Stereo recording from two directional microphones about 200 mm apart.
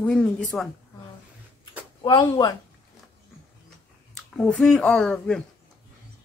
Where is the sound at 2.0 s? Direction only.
20° left (ahead or behind).